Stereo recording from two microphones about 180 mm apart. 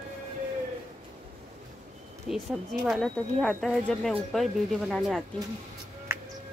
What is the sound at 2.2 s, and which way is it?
Speech, centre (ahead or behind).